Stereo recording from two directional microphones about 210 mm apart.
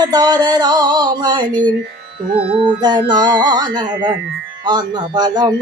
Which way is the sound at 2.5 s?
25° right (ahead or behind).